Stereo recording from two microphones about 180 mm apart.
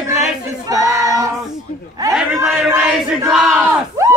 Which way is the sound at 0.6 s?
20° right (ahead or behind).